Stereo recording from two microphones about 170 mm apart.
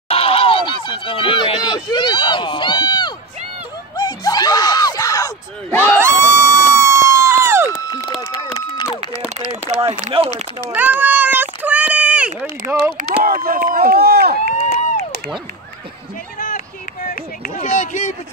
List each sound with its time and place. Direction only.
0.1 s a sound: 35° left (ahead or behind); by 5.9 s 10° left (ahead or behind)
5.9 s crowd: 15° right (ahead or behind)
8.2 s run: 25° left (ahead or behind)
9.4 s a sound: 35° right (ahead or behind)
9.8 s speech: 35° right (ahead or behind)
10.7 s a sound: 10° right (ahead or behind)
12.4 s speech: 10° right (ahead or behind)
13.2 s speech: 60° right (ahead or behind)
16.3 s run: 55° left (ahead or behind)